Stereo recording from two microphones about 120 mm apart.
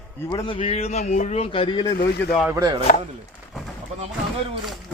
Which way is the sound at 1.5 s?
45° left (ahead or behind).